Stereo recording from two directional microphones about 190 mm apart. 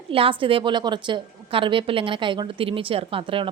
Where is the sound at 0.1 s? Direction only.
30° right (ahead or behind).